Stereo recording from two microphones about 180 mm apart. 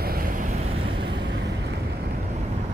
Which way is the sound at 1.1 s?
70° right (ahead or behind).